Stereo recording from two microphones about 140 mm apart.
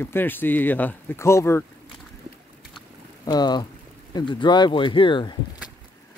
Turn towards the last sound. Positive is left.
turn(degrees=35)  # may be behind; listen again after turning